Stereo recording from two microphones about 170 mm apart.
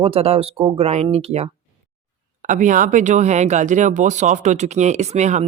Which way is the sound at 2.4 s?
50° right (ahead or behind).